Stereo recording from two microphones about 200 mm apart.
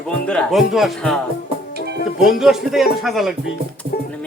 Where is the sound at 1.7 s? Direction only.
55° right (ahead or behind).